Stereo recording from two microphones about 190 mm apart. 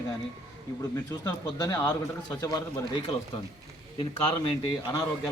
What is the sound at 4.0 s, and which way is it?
Speech, 25° left (ahead or behind).